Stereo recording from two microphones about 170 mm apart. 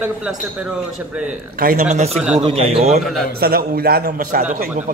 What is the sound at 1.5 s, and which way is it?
Speech, 60° right (ahead or behind).